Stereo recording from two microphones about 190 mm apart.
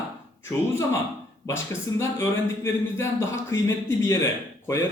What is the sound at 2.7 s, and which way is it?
A man's voice, 15° left (ahead or behind).